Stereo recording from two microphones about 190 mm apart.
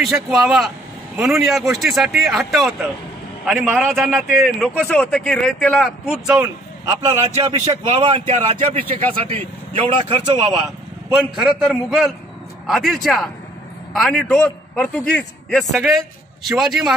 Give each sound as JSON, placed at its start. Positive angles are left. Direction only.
{"t": 0.0, "sound": "a man's voice", "side_deg": 0}
{"t": 7.7, "sound": "speech", "side_deg": -30}
{"t": 11.3, "sound": "a man's voice", "side_deg": -5}